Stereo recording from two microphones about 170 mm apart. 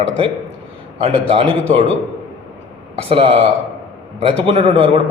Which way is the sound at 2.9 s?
35° right (ahead or behind).